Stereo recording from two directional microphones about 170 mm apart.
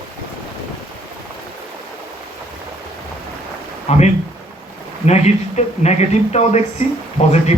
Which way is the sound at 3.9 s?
40° left (ahead or behind).